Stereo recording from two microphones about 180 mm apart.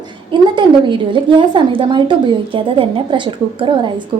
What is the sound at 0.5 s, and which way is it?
A woman's voice, 25° right (ahead or behind).